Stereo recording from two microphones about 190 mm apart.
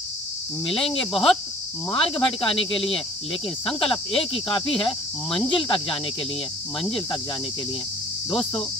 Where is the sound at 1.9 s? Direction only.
30° left (ahead or behind).